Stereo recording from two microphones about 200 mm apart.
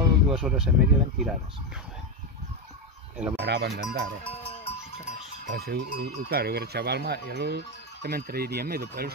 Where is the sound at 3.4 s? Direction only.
55° right (ahead or behind).